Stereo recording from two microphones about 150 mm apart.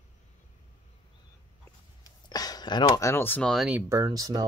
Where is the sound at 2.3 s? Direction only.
25° left (ahead or behind).